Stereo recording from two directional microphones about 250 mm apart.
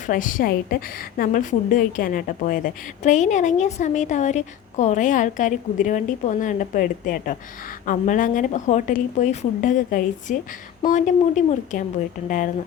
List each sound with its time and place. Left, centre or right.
0.1 s a woman's voice: left